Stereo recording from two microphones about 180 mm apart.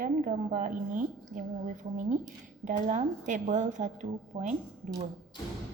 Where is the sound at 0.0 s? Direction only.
50° right (ahead or behind).